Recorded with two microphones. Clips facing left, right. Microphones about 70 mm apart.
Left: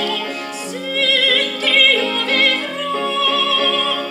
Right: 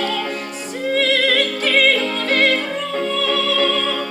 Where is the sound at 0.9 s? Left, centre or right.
Right.